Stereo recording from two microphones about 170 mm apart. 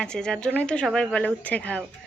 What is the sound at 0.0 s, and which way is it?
Speech, 5° left (ahead or behind).